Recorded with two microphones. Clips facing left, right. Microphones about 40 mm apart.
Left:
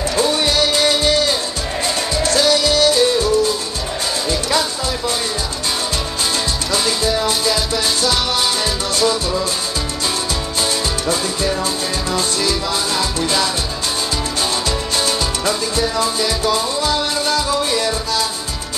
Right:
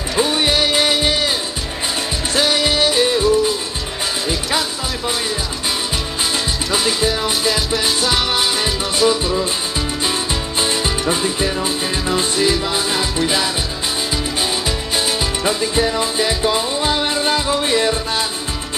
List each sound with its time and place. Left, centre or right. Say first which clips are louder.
0.1 s music: right 2 dB; centre
2.3 s music: left 1 dB; right
7.2 s music: even; centre
10.6 s music: right 2 dB; right
15.0 s music: right 1 dB; centre